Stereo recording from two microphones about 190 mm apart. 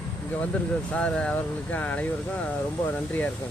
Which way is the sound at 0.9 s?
5° left (ahead or behind).